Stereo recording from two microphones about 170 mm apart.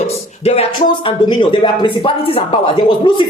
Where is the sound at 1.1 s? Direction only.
30° left (ahead or behind).